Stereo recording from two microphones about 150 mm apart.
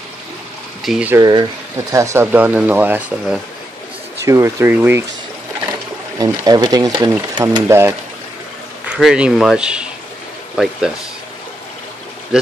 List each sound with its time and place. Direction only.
0.8 s speech: 5° right (ahead or behind)
1.1 s speech: 25° right (ahead or behind)
6.1 s speech: 25° right (ahead or behind)
8.8 s speech: 5° right (ahead or behind)